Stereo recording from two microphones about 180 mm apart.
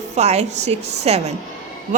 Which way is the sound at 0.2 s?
35° right (ahead or behind).